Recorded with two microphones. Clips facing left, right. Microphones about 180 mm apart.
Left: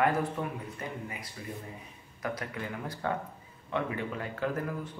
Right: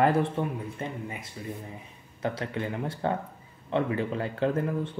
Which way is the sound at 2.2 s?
25° right (ahead or behind).